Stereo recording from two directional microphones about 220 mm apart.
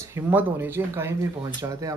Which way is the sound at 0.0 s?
10° right (ahead or behind).